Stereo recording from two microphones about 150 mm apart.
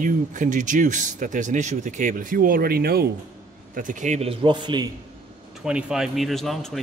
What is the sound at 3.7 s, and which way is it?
A man's voice, 60° right (ahead or behind).